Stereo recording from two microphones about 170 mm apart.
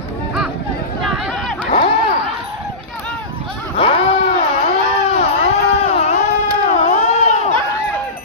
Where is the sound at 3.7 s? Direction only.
35° left (ahead or behind).